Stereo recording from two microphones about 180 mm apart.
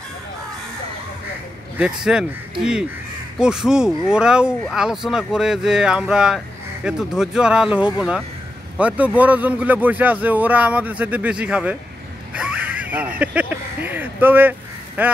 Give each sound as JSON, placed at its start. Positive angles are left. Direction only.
{"t": 1.8, "sound": "speech", "side_deg": -5}
{"t": 3.3, "sound": "speech", "side_deg": -5}
{"t": 12.4, "sound": "a sound", "side_deg": -5}
{"t": 15.0, "sound": "speech", "side_deg": -10}